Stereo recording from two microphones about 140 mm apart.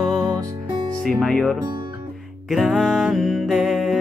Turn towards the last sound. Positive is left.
turn(degrees=0)  # may be behind; listen again after turning